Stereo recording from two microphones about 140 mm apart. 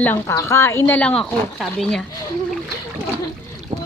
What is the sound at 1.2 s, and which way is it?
Speech, 5° left (ahead or behind).